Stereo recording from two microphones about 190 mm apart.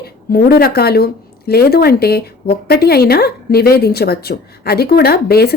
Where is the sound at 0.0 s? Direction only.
55° left (ahead or behind).